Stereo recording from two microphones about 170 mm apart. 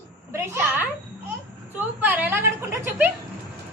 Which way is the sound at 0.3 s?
15° right (ahead or behind).